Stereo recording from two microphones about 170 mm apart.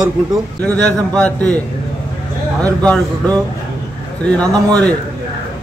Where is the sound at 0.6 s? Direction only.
5° left (ahead or behind).